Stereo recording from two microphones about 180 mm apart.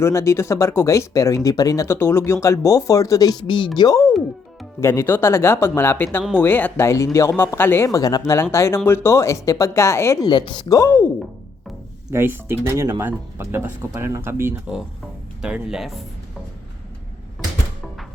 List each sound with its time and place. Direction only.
0.0 s speech: 15° left (ahead or behind)
12.1 s speech: 10° right (ahead or behind)